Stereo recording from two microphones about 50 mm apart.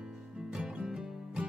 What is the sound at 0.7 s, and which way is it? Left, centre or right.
Music, centre.